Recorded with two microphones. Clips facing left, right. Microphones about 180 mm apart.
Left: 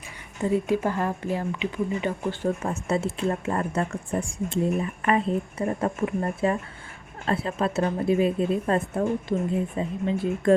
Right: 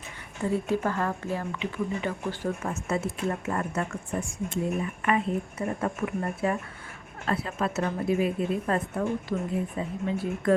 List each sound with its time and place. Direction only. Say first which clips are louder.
0.4 s speech: left 3 dB; 15° left (ahead or behind)
2.6 s a woman's voice: left 3 dB; 30° left (ahead or behind)